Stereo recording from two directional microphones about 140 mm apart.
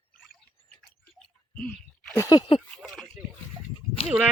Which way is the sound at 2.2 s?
30° left (ahead or behind).